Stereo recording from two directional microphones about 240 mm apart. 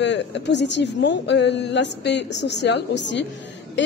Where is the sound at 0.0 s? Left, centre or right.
Left.